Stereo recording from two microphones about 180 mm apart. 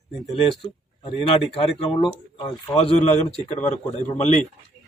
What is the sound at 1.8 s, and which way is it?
Speech, 30° left (ahead or behind).